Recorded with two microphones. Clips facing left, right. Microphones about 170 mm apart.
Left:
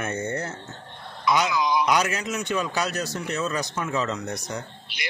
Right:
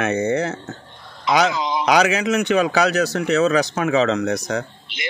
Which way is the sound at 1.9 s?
80° right.